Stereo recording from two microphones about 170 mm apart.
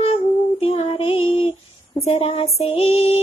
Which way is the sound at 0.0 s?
35° left (ahead or behind).